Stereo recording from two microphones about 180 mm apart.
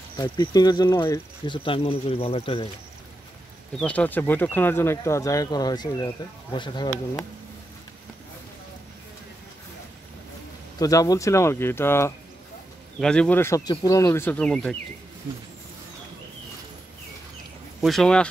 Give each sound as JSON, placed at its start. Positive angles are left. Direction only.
{"t": 0.2, "sound": "speech", "side_deg": 20}
{"t": 3.8, "sound": "speech", "side_deg": 10}
{"t": 10.8, "sound": "speech", "side_deg": 20}
{"t": 17.7, "sound": "speech", "side_deg": 0}